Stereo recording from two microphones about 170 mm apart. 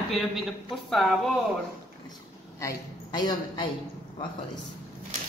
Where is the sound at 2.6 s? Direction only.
25° left (ahead or behind).